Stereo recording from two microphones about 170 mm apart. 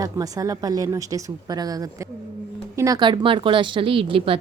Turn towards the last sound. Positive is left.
turn(degrees=-30)  # may be behind; listen again after turning